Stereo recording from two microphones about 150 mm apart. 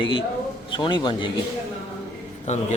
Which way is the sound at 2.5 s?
50° left (ahead or behind).